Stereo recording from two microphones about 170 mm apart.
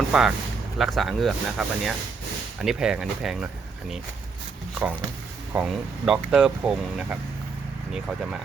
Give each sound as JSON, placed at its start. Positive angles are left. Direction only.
{"t": 0.1, "sound": "speech", "side_deg": -5}
{"t": 5.5, "sound": "speech", "side_deg": -5}